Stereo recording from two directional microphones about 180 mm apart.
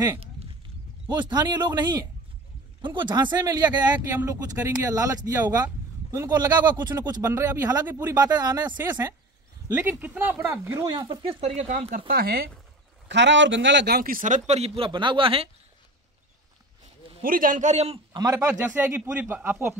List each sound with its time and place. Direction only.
1.0 s speech: 25° right (ahead or behind)
9.8 s a man's voice: 10° right (ahead or behind)
11.2 s speech: 35° right (ahead or behind)
12.1 s speech: 55° right (ahead or behind)
13.1 s a man's voice: 85° right; by 15.5 s 30° right (ahead or behind)
17.2 s a man's voice: 50° right (ahead or behind); by 19.7 s 10° right (ahead or behind)